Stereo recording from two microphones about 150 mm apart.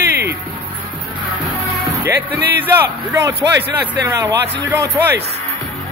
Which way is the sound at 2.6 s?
20° right (ahead or behind).